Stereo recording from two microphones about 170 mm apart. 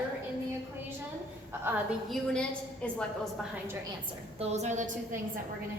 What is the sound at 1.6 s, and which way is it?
Speech, 10° right (ahead or behind).